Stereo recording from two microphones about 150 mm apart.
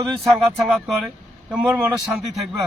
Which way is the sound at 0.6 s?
Centre (ahead or behind).